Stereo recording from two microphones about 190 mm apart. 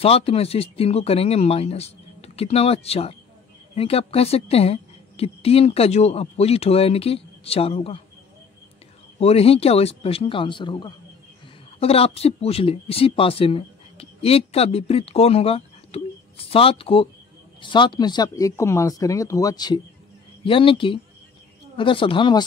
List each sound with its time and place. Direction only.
0.0 s a woman's voice: 30° left (ahead or behind)
9.2 s a woman's voice: 30° left (ahead or behind)